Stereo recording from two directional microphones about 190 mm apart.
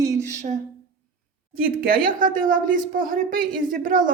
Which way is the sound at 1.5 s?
50° right (ahead or behind).